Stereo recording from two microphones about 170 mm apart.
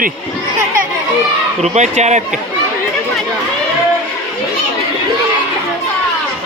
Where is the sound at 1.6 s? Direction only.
40° right (ahead or behind).